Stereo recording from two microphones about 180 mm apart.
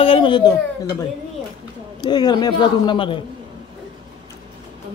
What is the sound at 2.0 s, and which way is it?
Speech, 25° left (ahead or behind).